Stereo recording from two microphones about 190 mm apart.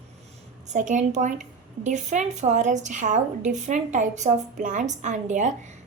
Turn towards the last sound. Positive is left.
turn(degrees=-40)  # may be behind; listen again after turning